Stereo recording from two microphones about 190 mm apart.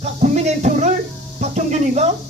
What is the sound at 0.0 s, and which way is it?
Speech, 35° right (ahead or behind).